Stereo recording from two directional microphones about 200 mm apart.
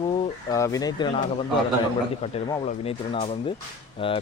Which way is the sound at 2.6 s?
30° left (ahead or behind).